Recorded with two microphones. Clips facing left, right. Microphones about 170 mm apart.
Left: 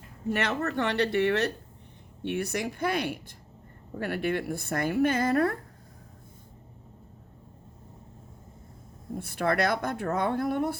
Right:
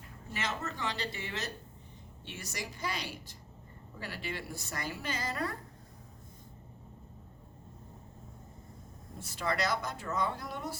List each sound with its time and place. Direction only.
0.3 s speech: 65° left (ahead or behind)
9.1 s speech: 55° left (ahead or behind)